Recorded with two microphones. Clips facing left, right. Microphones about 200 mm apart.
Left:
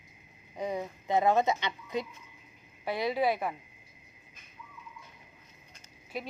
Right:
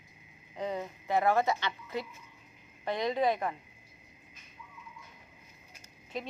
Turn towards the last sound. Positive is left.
turn(degrees=10)  # may be behind; listen again after turning